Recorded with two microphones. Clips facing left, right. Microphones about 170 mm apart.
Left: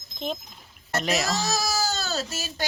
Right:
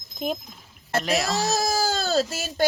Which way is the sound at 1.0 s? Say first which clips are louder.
Right 1 dB; centre (ahead or behind).